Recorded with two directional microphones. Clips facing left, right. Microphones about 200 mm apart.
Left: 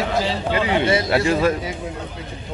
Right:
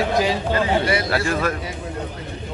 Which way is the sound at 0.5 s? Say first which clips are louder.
Left 3 dB; 25° left (ahead or behind).